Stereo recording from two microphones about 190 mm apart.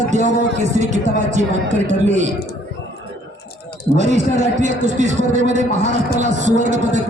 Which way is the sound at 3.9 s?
40° right (ahead or behind).